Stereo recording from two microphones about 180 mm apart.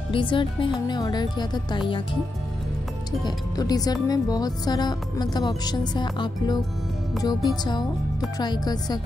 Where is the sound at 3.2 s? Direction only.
20° left (ahead or behind).